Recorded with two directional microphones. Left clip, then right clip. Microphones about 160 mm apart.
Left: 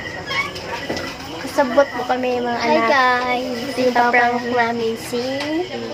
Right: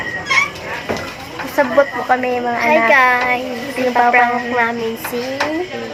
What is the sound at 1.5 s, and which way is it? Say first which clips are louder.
A woman's voice: right 2 dB; 20° right (ahead or behind).